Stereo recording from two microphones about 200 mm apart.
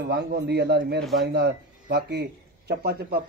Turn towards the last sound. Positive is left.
turn(degrees=-50)  # may be behind; listen again after turning